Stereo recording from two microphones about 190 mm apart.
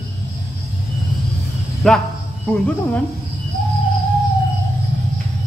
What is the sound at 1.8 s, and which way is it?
A woman's voice, centre (ahead or behind).